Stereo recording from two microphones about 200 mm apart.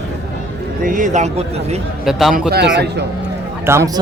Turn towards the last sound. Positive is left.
turn(degrees=-15)  # may be behind; listen again after turning